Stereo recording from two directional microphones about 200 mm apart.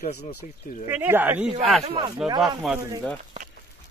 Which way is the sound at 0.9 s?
10° right (ahead or behind).